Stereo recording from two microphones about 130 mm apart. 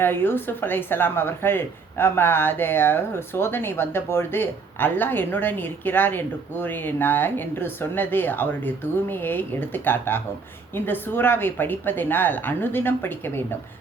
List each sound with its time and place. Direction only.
0.0 s speech: 15° left (ahead or behind)